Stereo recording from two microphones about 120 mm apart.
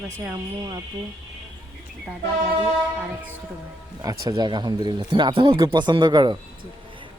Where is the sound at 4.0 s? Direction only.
30° right (ahead or behind).